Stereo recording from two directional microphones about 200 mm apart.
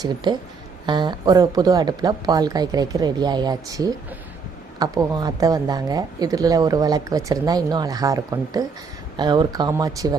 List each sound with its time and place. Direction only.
0.3 s speech: 20° right (ahead or behind)